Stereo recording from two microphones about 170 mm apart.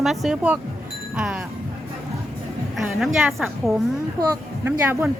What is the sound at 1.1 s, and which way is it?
Wind chime, 5° right (ahead or behind).